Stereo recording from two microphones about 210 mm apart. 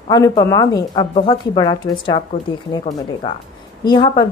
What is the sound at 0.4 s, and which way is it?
Speech, 15° left (ahead or behind).